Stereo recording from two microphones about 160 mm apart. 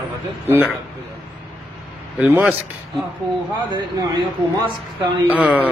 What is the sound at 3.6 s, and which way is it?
Speech, 25° right (ahead or behind).